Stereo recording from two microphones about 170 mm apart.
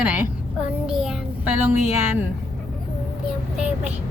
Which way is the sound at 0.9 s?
5° right (ahead or behind).